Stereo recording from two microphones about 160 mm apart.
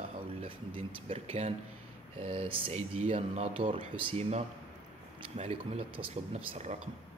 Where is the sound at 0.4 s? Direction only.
35° right (ahead or behind).